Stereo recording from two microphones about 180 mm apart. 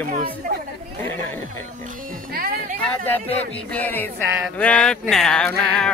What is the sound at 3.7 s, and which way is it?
Speech, 10° left (ahead or behind).